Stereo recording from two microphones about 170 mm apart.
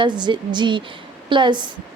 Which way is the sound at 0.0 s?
25° right (ahead or behind).